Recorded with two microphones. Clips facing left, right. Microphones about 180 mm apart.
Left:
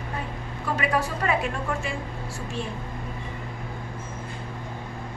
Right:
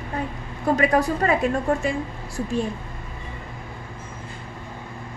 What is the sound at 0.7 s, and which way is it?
Speech, 40° right (ahead or behind).